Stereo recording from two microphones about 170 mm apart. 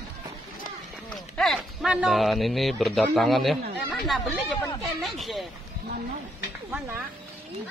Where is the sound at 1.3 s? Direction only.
Centre (ahead or behind).